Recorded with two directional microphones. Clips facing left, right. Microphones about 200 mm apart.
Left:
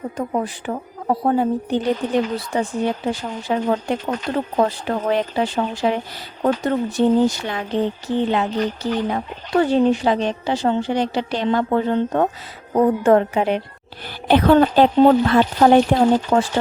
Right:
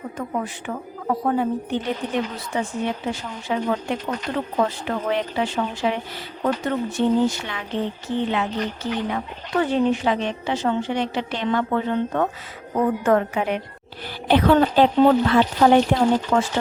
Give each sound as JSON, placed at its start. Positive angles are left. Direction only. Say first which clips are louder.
{"t": 0.2, "sound": "a woman's voice", "louder": "left 4 dB", "side_deg": 35}
{"t": 14.3, "sound": "a woman's voice", "louder": "left 3 dB", "side_deg": 45}
{"t": 16.3, "sound": "speech", "louder": "left 3 dB", "side_deg": 30}